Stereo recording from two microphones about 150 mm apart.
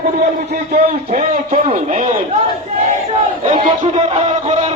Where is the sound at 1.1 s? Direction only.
50° right (ahead or behind).